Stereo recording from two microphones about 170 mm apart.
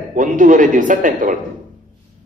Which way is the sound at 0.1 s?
50° right (ahead or behind).